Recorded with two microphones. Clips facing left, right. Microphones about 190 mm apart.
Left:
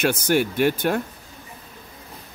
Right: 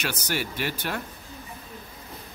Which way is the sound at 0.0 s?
50° left (ahead or behind).